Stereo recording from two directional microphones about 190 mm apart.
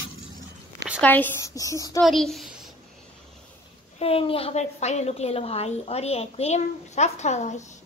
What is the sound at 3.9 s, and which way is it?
A woman's voice, 30° left (ahead or behind).